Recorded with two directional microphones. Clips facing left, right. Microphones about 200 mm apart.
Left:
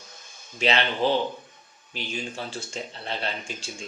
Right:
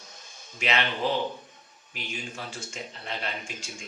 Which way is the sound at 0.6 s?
30° left (ahead or behind).